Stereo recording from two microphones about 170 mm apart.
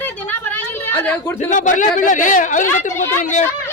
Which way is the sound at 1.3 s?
45° left (ahead or behind).